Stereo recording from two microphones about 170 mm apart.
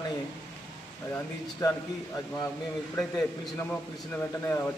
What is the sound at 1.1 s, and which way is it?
A man's voice, 20° left (ahead or behind).